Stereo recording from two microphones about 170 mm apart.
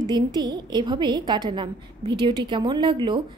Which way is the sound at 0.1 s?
25° right (ahead or behind).